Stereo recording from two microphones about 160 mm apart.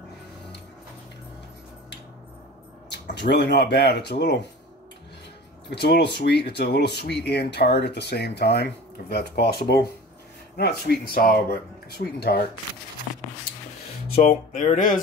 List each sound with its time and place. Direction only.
3.2 s speech: 90° left
5.7 s speech: 90° left
14.2 s a sound: 50° left (ahead or behind)